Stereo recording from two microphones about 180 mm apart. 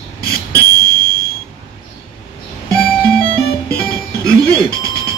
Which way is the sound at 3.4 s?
60° left (ahead or behind).